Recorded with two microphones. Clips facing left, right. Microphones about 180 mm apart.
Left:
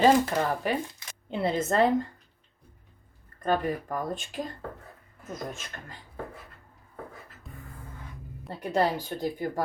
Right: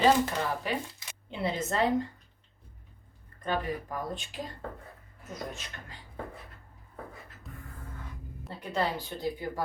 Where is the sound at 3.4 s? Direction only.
45° left (ahead or behind).